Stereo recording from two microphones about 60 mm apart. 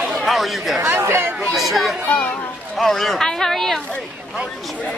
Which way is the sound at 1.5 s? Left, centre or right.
Centre.